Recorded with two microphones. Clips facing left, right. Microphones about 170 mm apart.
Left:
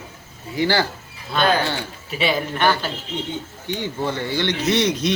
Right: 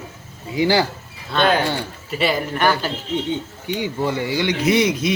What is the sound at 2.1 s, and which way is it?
A man's voice, centre (ahead or behind).